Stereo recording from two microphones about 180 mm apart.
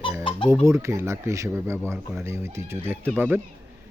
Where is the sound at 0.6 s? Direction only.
15° right (ahead or behind).